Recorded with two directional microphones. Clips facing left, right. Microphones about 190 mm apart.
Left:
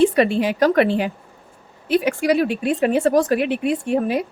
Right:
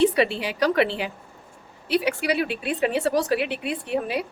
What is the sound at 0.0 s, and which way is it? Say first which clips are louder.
Speech: left 5 dB; 50° left (ahead or behind).